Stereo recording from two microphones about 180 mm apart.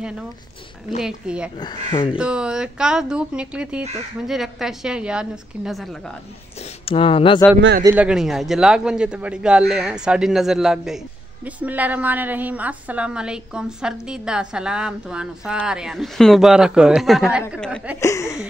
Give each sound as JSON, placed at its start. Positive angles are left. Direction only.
{"t": 1.0, "sound": "a woman's voice", "side_deg": -5}
{"t": 1.6, "sound": "speech", "side_deg": 25}
{"t": 2.1, "sound": "a woman's voice", "side_deg": -5}
{"t": 6.6, "sound": "speech", "side_deg": 30}
{"t": 7.8, "sound": "a woman's voice", "side_deg": -10}
{"t": 18.0, "sound": "speech", "side_deg": 15}